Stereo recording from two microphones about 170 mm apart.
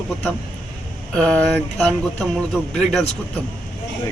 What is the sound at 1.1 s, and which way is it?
Speech, 5° left (ahead or behind).